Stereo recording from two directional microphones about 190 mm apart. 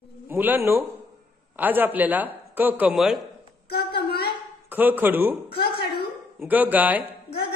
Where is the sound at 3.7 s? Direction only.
55° left (ahead or behind).